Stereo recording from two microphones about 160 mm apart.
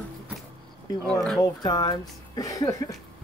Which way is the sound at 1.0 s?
5° left (ahead or behind).